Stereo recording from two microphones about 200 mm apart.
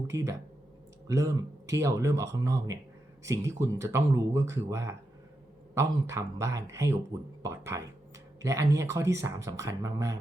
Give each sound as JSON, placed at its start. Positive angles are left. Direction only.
{"t": 0.1, "sound": "speech", "side_deg": -15}